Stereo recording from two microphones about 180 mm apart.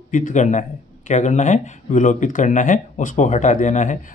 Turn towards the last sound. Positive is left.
turn(degrees=45)  # may be behind; listen again after turning